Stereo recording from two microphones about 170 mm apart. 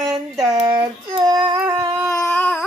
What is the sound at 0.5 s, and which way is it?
Child singing, 25° right (ahead or behind).